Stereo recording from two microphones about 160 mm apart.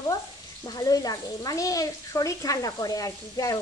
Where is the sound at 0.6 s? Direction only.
25° left (ahead or behind).